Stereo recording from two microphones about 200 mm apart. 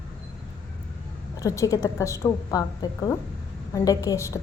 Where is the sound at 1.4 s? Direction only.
15° left (ahead or behind).